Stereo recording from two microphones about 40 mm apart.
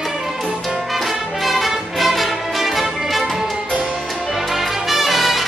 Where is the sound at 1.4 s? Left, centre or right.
Centre.